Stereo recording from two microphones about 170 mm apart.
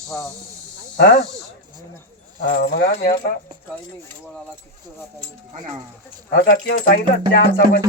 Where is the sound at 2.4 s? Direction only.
60° left (ahead or behind).